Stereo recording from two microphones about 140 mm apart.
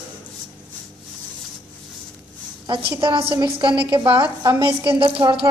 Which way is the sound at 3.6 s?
35° right (ahead or behind).